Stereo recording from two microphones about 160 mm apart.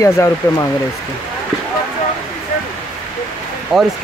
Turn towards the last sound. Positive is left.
turn(degrees=0)  # may be behind; listen again after turning